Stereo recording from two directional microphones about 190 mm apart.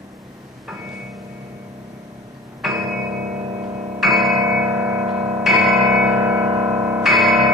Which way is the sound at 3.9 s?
Centre (ahead or behind).